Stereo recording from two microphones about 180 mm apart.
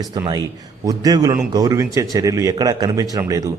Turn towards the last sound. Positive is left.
turn(degrees=-15)  # may be behind; listen again after turning